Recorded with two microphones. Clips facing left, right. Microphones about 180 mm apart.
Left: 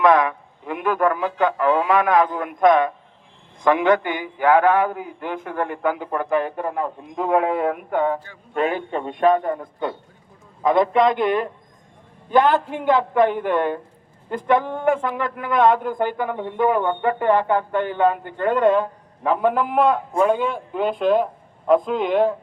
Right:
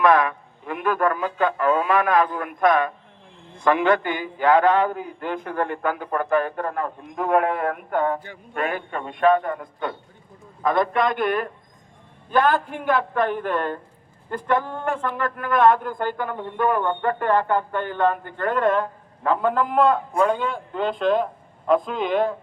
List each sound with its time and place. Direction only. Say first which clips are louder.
0.0 s a man's voice: left 2 dB; 20° left (ahead or behind)
8.9 s a man's voice: right 1 dB; 25° left (ahead or behind); by 22.4 s 5° left (ahead or behind)